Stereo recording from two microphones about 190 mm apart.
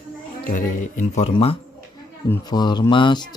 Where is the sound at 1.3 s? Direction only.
30° left (ahead or behind).